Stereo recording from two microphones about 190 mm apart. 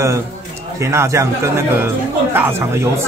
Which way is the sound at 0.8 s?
15° right (ahead or behind).